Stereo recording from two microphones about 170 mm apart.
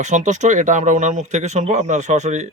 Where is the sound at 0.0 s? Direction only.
45° right (ahead or behind).